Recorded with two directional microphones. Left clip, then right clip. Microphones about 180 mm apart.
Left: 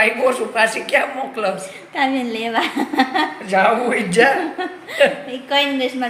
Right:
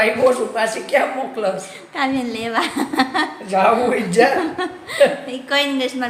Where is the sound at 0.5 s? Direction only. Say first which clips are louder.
Left 2 dB; 15° right (ahead or behind).